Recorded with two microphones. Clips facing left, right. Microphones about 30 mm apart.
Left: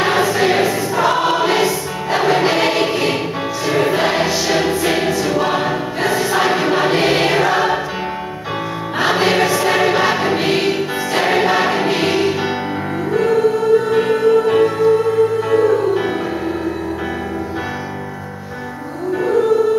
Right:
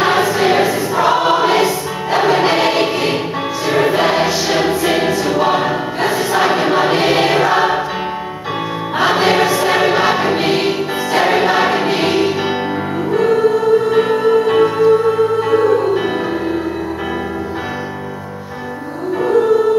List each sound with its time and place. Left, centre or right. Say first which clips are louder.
0.2 s choir: right 1 dB; centre
8.9 s choir: right 2 dB; centre
13.1 s music: right 2 dB; centre
13.9 s music: right 1 dB; right